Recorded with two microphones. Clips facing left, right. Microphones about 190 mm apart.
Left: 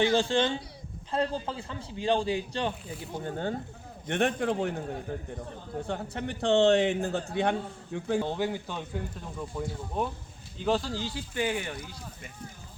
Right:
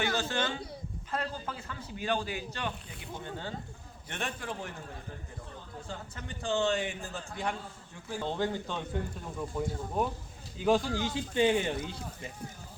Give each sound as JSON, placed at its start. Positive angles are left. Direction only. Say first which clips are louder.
{"t": 0.0, "sound": "a man's voice", "louder": "left 7 dB", "side_deg": 30}
{"t": 3.2, "sound": "speech", "louder": "left 8 dB", "side_deg": 50}
{"t": 4.1, "sound": "a man's voice", "louder": "left 11 dB", "side_deg": 60}
{"t": 8.2, "sound": "speech", "louder": "left 2 dB", "side_deg": 10}
{"t": 9.5, "sound": "speech", "louder": "even", "side_deg": -10}
{"t": 11.1, "sound": "speech", "louder": "right 5 dB", "side_deg": -25}